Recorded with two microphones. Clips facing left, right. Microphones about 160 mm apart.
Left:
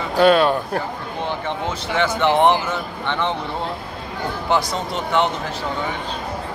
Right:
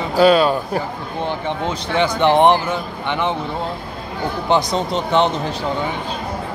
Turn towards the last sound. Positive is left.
turn(degrees=-20)  # may be behind; listen again after turning